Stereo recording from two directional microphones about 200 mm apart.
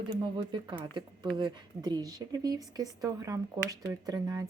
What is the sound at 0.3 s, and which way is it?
Speech, 25° right (ahead or behind).